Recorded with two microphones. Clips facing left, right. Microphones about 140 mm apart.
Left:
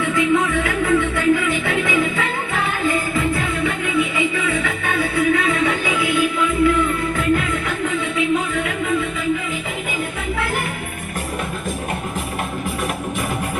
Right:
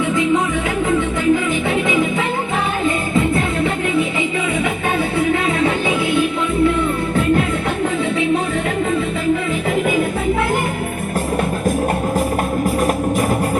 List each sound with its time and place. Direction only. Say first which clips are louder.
0.9 s music: right 1 dB; 20° right (ahead or behind)